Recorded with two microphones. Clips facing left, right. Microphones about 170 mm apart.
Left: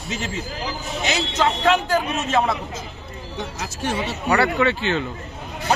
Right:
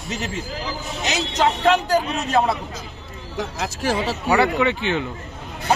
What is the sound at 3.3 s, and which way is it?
Speech, 90° right.